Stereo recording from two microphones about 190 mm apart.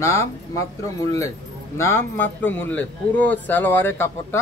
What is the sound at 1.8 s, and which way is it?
Speech, 10° left (ahead or behind).